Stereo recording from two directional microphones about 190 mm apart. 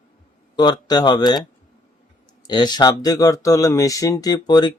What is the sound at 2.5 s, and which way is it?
Speech, 20° left (ahead or behind).